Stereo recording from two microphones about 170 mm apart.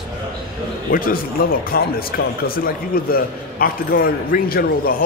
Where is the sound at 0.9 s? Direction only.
60° left (ahead or behind).